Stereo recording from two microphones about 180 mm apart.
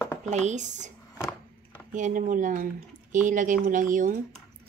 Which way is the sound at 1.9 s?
45° right (ahead or behind).